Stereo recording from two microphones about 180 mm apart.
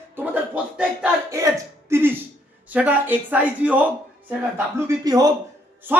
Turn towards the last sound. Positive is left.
turn(degrees=-10)  # may be behind; listen again after turning